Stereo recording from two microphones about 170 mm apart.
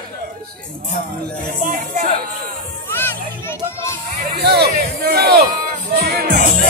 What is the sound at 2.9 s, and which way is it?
Children playing, 15° left (ahead or behind).